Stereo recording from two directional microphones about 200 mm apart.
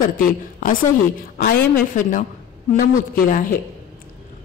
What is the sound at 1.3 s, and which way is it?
Speech, 45° left (ahead or behind).